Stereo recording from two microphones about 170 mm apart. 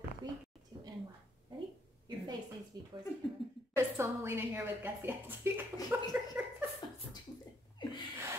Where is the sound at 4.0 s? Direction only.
15° right (ahead or behind).